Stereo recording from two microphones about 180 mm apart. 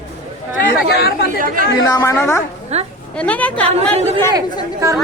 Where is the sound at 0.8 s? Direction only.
60° left (ahead or behind).